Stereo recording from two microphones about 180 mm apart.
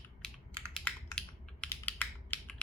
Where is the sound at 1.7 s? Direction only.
10° left (ahead or behind).